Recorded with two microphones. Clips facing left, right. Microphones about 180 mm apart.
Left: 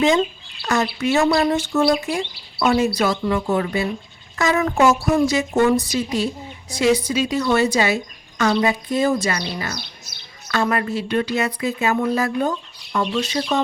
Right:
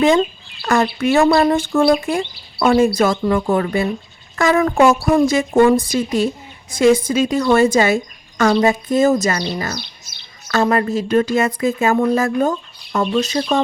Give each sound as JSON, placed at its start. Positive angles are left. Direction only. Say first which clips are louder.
{"t": 0.6, "sound": "speech", "louder": "right 4 dB", "side_deg": -55}